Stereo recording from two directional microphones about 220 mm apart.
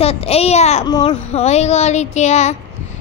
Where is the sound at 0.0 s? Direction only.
25° left (ahead or behind).